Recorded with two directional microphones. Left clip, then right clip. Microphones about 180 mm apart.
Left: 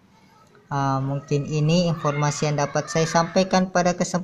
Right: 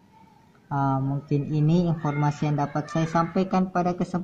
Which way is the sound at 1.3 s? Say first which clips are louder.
Left 3 dB; 45° left (ahead or behind).